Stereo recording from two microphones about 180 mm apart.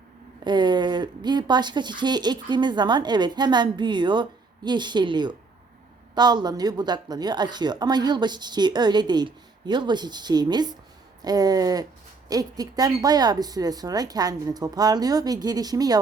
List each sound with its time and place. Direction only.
0.4 s speech: 25° right (ahead or behind)